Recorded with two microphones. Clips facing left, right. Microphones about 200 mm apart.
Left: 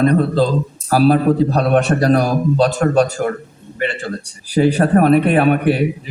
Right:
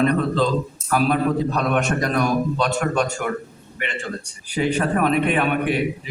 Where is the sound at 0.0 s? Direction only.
35° left (ahead or behind).